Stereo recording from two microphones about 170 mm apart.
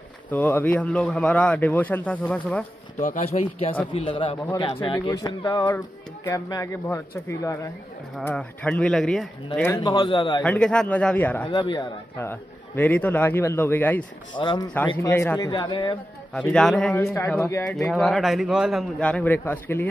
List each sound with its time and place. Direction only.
0.3 s a man's voice: 10° left (ahead or behind)
3.0 s a man's voice: 45° left (ahead or behind)
3.3 s a man's voice: 35° left (ahead or behind); by 9.3 s centre (ahead or behind)
9.8 s a man's voice: 25° left (ahead or behind)
10.4 s a man's voice: 5° left (ahead or behind)
11.4 s a man's voice: 30° left (ahead or behind)
12.2 s a man's voice: 10° left (ahead or behind)
14.3 s a man's voice: 30° left (ahead or behind)
15.0 s a man's voice: 15° left (ahead or behind)
16.3 s a man's voice: 5° left (ahead or behind)
17.6 s speech: 5° left (ahead or behind)